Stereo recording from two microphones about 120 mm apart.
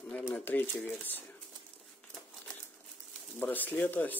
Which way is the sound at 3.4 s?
15° left (ahead or behind).